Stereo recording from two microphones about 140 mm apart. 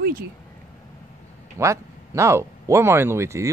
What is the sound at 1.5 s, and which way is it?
Speech, 20° right (ahead or behind).